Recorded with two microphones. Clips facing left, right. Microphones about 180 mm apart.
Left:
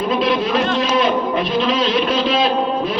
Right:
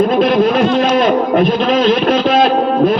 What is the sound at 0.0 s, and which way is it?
Speech, 50° right (ahead or behind).